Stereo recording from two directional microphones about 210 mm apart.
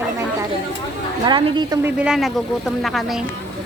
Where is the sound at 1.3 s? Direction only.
25° right (ahead or behind).